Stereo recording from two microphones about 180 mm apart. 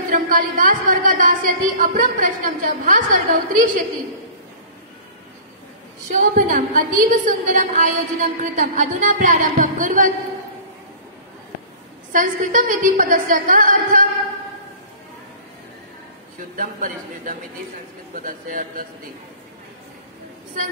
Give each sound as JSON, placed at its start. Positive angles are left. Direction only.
{"t": 0.1, "sound": "a woman's voice", "side_deg": -50}
{"t": 6.0, "sound": "a woman's voice", "side_deg": -45}
{"t": 12.1, "sound": "a woman's voice", "side_deg": -45}
{"t": 16.3, "sound": "a woman's voice", "side_deg": -50}